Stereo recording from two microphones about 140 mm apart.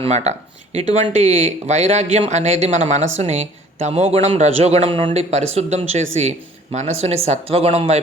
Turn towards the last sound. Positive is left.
turn(degrees=-45)  # may be behind; listen again after turning